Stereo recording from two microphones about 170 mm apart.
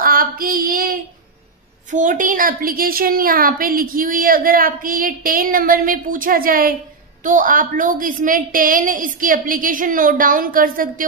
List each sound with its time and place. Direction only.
0.0 s female singing: 55° right (ahead or behind)
1.9 s a woman's voice: 50° right (ahead or behind)